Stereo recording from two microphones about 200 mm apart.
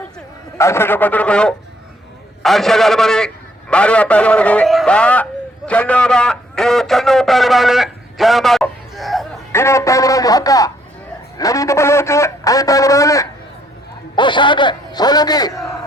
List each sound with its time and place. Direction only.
0.6 s a man's voice: 10° left (ahead or behind)
9.5 s a man's voice: 15° left (ahead or behind)